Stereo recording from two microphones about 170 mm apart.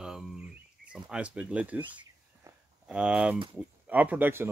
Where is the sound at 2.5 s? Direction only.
20° right (ahead or behind).